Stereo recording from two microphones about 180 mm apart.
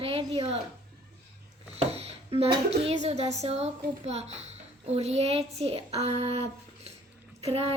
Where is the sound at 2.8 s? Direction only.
35° right (ahead or behind).